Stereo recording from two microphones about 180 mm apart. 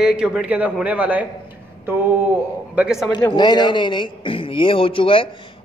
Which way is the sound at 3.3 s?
25° left (ahead or behind).